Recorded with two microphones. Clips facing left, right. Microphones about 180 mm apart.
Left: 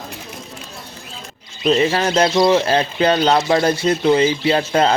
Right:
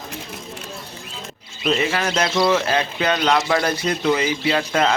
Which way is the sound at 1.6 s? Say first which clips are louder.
Left 5 dB; 30° left (ahead or behind).